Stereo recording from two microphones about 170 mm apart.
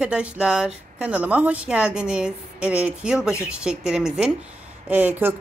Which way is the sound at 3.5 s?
5° right (ahead or behind).